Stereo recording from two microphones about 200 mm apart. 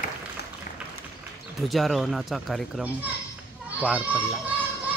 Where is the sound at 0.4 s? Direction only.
55° left (ahead or behind).